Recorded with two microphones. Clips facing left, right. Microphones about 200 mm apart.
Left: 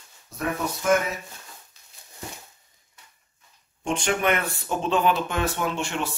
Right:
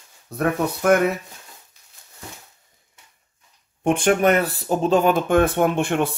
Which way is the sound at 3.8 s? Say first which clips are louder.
Right 7 dB; 55° right (ahead or behind).